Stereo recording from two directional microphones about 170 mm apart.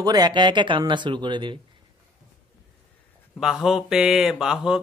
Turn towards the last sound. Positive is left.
turn(degrees=-5)  # may be behind; listen again after turning